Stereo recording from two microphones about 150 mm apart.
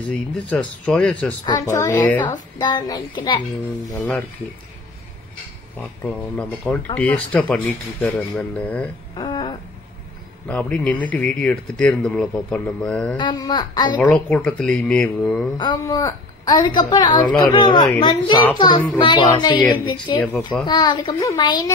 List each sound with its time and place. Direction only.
0.0 s speech: 10° left (ahead or behind)
1.4 s a woman's voice: 25° left (ahead or behind)
5.8 s speech: 5° left (ahead or behind)
9.1 s a sound: 30° left (ahead or behind)
10.5 s speech: 10° left (ahead or behind)
13.2 s a woman's voice: 30° left (ahead or behind)
14.0 s speech: 5° left (ahead or behind)
15.5 s a woman's voice: 30° left (ahead or behind)